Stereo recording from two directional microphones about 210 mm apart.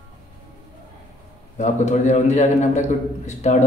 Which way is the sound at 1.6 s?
35° left (ahead or behind).